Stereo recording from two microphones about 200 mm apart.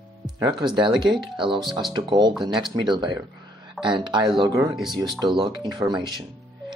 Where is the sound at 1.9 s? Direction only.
20° right (ahead or behind).